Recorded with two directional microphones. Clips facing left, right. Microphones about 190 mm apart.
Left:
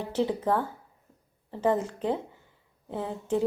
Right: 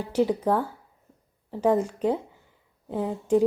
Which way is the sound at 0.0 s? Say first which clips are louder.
Right 4 dB; 10° right (ahead or behind).